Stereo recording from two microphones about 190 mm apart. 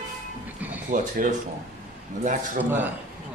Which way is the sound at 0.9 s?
40° right (ahead or behind).